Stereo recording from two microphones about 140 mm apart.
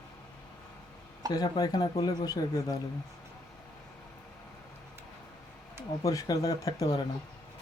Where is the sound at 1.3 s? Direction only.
30° left (ahead or behind).